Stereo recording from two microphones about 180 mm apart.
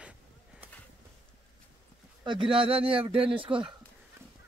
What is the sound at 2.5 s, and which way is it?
Speech, 30° right (ahead or behind).